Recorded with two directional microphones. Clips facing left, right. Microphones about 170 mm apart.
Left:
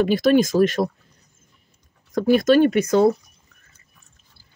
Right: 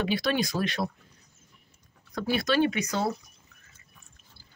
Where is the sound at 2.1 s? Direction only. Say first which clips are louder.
Left 10 dB; 45° left (ahead or behind).